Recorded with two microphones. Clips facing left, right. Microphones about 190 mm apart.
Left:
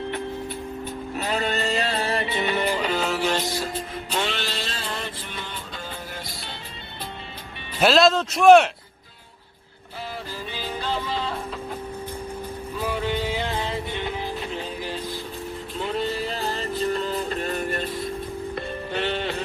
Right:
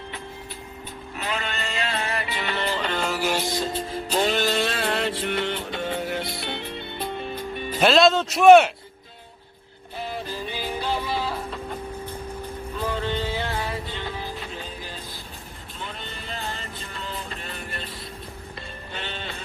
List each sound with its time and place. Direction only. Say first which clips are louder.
1.1 s music: left 4 dB; 40° left (ahead or behind); by 3.4 s 5° right (ahead or behind)
3.5 s music: right 2 dB; 20° right (ahead or behind); by 6.6 s 65° right (ahead or behind)
7.8 s a man's voice: even; centre (ahead or behind)
10.5 s music: even; 15° right (ahead or behind)
12.8 s music: left 1 dB; 10° left (ahead or behind)
15.9 s music: left 13 dB; 35° left (ahead or behind)
18.9 s music: left 9 dB; 60° left (ahead or behind)